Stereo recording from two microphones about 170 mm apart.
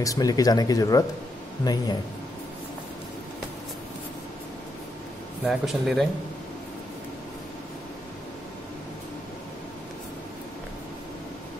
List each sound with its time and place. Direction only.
0.0 s speech: 20° left (ahead or behind)
5.4 s speech: centre (ahead or behind)